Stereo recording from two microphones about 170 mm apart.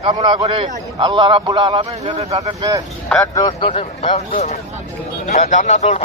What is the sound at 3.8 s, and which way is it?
Speech, 35° left (ahead or behind).